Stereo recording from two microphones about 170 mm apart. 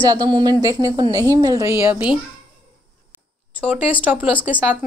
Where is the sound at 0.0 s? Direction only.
25° right (ahead or behind).